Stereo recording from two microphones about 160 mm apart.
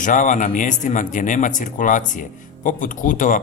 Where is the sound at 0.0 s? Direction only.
55° left (ahead or behind).